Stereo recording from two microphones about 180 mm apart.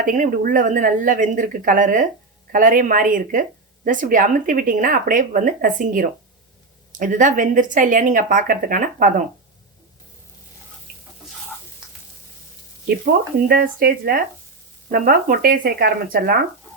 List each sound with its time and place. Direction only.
0.0 s speech: 50° right (ahead or behind)
13.5 s speech: 55° right (ahead or behind)